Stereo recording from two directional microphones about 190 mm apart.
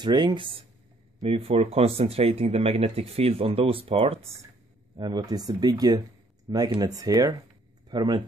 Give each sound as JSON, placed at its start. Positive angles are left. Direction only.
{"t": 0.0, "sound": "speech", "side_deg": -25}